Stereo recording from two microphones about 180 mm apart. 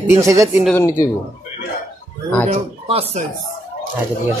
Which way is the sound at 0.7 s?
15° left (ahead or behind).